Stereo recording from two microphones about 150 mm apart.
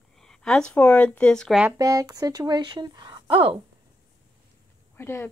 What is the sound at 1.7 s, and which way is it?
Speech, 25° right (ahead or behind).